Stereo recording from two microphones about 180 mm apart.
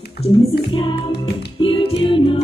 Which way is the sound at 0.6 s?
30° left (ahead or behind).